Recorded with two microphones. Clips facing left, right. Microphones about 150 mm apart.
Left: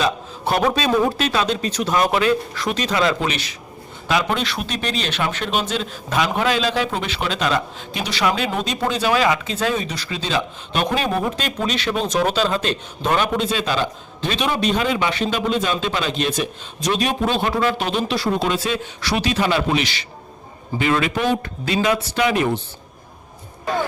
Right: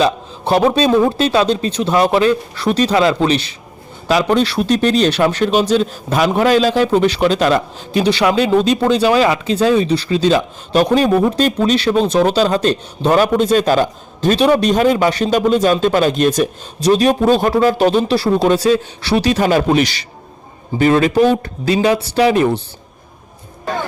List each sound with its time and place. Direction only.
0.0 s a man's voice: 30° right (ahead or behind)